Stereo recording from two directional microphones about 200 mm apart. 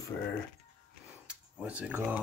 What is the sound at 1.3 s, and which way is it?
Speech, 5° right (ahead or behind).